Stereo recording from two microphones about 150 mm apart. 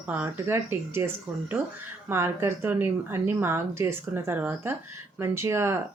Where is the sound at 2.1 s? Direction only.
15° right (ahead or behind).